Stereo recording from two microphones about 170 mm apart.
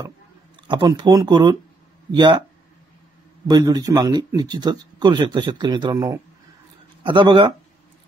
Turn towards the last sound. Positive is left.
turn(degrees=-30)  # may be behind; listen again after turning